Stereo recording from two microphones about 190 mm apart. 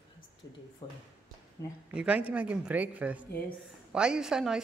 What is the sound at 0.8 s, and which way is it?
Speech, 25° left (ahead or behind).